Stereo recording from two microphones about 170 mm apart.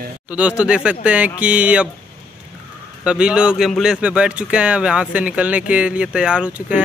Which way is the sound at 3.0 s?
5° right (ahead or behind).